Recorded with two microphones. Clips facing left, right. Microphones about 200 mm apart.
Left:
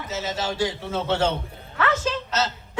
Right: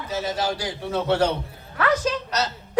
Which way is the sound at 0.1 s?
25° left (ahead or behind).